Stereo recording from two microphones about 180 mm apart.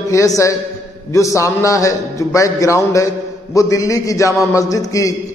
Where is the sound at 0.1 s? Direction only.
15° left (ahead or behind).